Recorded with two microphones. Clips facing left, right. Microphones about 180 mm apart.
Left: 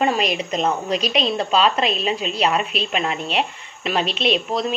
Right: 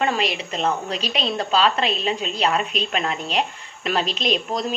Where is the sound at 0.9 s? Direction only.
35° right (ahead or behind).